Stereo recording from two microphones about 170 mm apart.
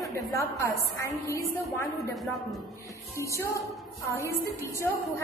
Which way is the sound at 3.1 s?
15° left (ahead or behind).